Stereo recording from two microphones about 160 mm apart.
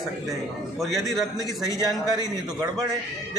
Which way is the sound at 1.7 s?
25° right (ahead or behind).